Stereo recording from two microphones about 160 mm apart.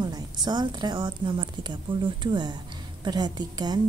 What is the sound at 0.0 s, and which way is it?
A woman's voice, 25° right (ahead or behind).